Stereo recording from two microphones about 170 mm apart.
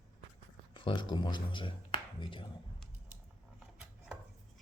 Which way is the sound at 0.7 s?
30° left (ahead or behind).